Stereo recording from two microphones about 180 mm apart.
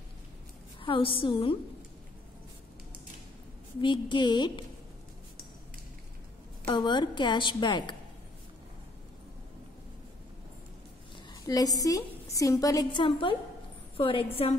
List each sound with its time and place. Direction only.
0.7 s a woman's voice: 30° left (ahead or behind)
3.8 s a woman's voice: 25° left (ahead or behind)
6.7 s a woman's voice: 25° left (ahead or behind)
11.4 s a woman's voice: 20° left (ahead or behind)